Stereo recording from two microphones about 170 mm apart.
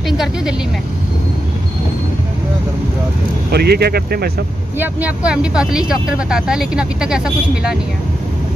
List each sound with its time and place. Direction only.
3.5 s speech: 70° right (ahead or behind)
4.7 s speech: 10° right (ahead or behind)